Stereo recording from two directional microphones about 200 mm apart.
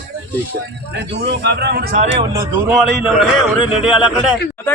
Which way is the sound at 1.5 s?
60° right (ahead or behind).